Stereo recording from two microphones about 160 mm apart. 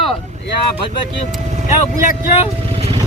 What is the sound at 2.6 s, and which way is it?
Vehicle, 40° right (ahead or behind).